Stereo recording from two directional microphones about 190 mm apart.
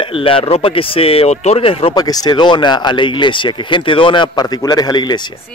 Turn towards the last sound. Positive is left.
turn(degrees=20)  # may be behind; listen again after turning